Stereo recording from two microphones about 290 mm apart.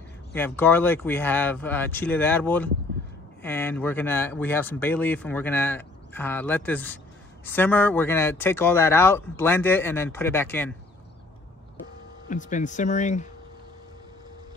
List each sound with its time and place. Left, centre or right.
0.3 s speech: centre
12.3 s speech: left